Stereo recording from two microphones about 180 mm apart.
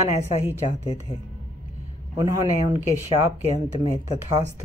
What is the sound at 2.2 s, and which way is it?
Speech, 20° right (ahead or behind).